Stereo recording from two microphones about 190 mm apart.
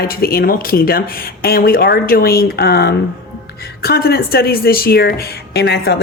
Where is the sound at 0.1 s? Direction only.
50° left (ahead or behind).